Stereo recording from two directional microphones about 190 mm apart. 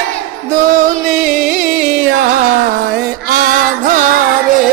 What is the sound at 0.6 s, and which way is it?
Music, 45° right (ahead or behind).